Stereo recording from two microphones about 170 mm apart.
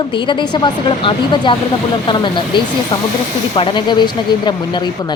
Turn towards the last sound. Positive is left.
turn(degrees=25)  # may be behind; listen again after turning